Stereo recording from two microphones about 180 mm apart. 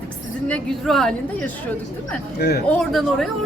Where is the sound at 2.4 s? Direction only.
60° left (ahead or behind).